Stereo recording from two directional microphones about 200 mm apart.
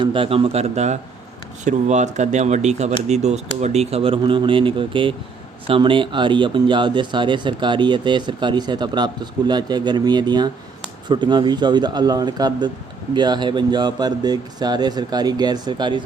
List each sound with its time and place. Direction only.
0.0 s speech: 25° right (ahead or behind)